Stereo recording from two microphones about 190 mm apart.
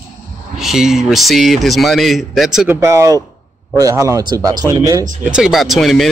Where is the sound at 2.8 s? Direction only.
15° right (ahead or behind).